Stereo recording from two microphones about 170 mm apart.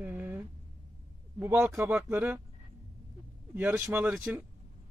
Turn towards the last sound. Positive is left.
turn(degrees=-10)  # may be behind; listen again after turning